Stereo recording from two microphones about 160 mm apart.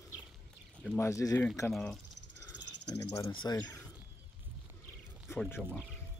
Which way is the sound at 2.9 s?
20° left (ahead or behind).